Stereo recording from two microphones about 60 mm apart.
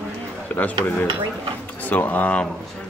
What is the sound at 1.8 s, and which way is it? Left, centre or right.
Speech, left.